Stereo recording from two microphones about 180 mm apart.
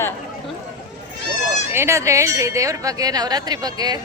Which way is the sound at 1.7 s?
15° right (ahead or behind).